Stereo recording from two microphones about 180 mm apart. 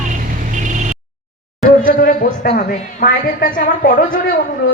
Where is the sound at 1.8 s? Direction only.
50° left (ahead or behind).